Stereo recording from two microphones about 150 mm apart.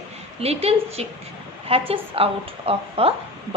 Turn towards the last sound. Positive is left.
turn(degrees=-40)  # may be behind; listen again after turning